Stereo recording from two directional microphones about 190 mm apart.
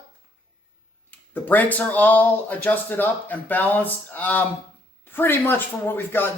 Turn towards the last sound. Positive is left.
turn(degrees=10)  # may be behind; listen again after turning